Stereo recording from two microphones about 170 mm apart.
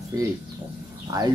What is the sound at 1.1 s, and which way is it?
Speech, 20° right (ahead or behind).